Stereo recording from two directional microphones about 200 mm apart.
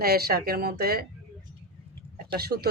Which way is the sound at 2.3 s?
50° right (ahead or behind).